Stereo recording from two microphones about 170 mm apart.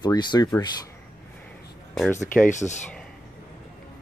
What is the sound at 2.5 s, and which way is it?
Speech, 45° left (ahead or behind).